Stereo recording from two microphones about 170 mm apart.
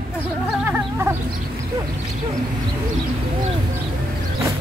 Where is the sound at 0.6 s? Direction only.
15° right (ahead or behind).